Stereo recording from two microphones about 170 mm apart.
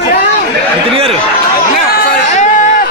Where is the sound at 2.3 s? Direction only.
45° left (ahead or behind).